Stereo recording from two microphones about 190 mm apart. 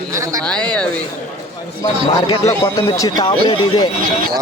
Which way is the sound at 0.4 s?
5° left (ahead or behind).